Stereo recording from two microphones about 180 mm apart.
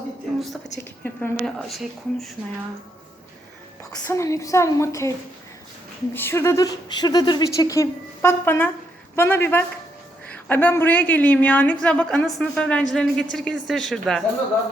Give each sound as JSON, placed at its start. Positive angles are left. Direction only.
{"t": 0.3, "sound": "speech", "side_deg": 0}
{"t": 4.0, "sound": "a woman's voice", "side_deg": 15}
{"t": 6.1, "sound": "a woman's voice", "side_deg": 15}